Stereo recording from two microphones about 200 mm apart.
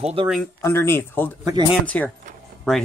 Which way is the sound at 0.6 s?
10° left (ahead or behind).